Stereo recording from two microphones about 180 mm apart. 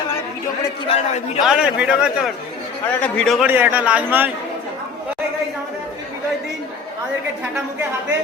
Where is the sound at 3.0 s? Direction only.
5° left (ahead or behind).